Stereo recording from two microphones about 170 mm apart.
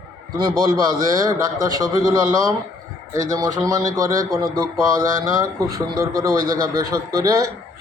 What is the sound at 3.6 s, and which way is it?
A man's voice, 20° right (ahead or behind).